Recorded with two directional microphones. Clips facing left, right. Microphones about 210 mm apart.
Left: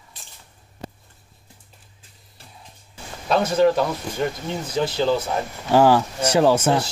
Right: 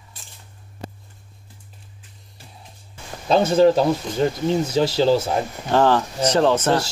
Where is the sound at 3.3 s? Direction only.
30° right (ahead or behind).